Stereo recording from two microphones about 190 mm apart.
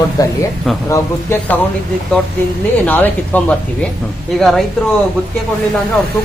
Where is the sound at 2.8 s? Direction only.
10° left (ahead or behind).